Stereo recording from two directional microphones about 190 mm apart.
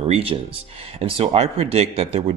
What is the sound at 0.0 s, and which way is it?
Speech, 30° right (ahead or behind).